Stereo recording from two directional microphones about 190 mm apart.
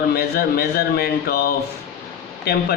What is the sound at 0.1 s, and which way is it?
Speech, 55° left (ahead or behind).